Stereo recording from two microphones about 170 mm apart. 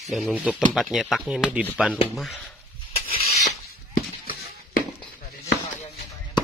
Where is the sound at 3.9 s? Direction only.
60° left (ahead or behind).